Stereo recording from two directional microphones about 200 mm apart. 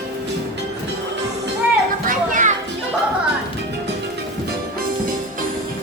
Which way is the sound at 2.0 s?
40° right (ahead or behind).